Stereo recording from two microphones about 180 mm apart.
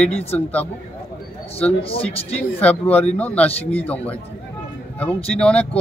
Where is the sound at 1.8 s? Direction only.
30° left (ahead or behind).